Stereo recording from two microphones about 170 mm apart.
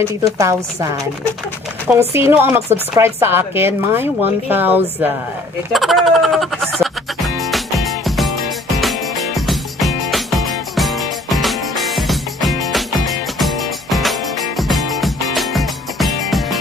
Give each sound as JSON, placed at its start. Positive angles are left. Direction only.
{"t": 0.0, "sound": "a woman's voice", "side_deg": -15}
{"t": 5.7, "sound": "music", "side_deg": 0}